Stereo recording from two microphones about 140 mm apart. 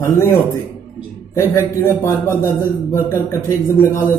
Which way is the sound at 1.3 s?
20° left (ahead or behind).